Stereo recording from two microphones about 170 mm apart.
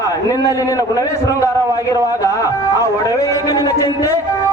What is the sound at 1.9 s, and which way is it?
A man's voice, 20° left (ahead or behind).